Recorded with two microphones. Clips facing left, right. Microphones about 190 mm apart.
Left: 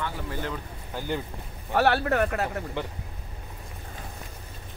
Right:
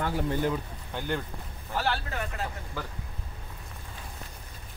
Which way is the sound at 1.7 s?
65° left (ahead or behind).